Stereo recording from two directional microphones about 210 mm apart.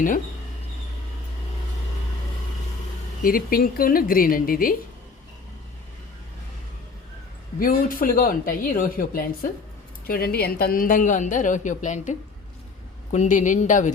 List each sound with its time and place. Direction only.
3.2 s a woman's voice: 45° left (ahead or behind)
7.6 s a woman's voice: 40° left (ahead or behind)